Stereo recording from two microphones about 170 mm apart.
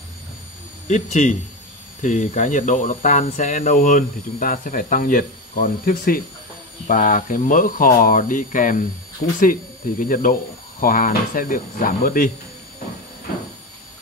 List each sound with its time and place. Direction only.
0.8 s speech: 45° left (ahead or behind)